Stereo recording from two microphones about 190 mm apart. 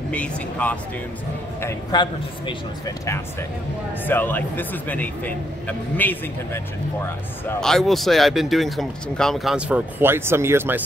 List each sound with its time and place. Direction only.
0.1 s speech: 5° left (ahead or behind)
1.6 s a man's voice: 20° left (ahead or behind)
4.0 s speech: 10° left (ahead or behind); by 10.8 s 10° right (ahead or behind)